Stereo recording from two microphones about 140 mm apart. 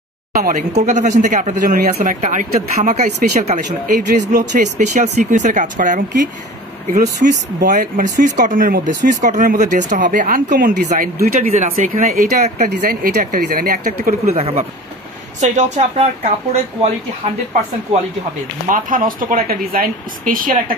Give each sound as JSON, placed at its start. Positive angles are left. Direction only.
{"t": 0.3, "sound": "speech", "side_deg": -70}
{"t": 7.2, "sound": "speech", "side_deg": -90}
{"t": 7.6, "sound": "speech", "side_deg": -70}
{"t": 9.2, "sound": "speech", "side_deg": -60}
{"t": 10.9, "sound": "speech", "side_deg": -70}
{"t": 11.5, "sound": "speech", "side_deg": -60}
{"t": 14.2, "sound": "speech", "side_deg": -45}
{"t": 18.7, "sound": "speech", "side_deg": -75}